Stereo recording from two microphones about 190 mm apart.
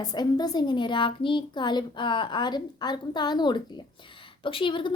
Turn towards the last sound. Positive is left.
turn(degrees=25)  # may be behind; listen again after turning